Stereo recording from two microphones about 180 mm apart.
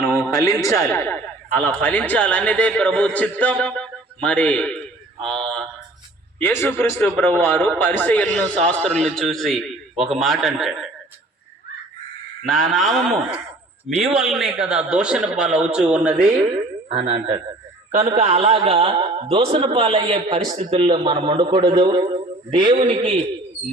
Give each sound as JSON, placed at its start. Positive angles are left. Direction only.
{"t": 0.2, "sound": "a man's voice", "side_deg": 20}
{"t": 12.5, "sound": "a man's voice", "side_deg": 0}
{"t": 16.9, "sound": "a man's voice", "side_deg": -35}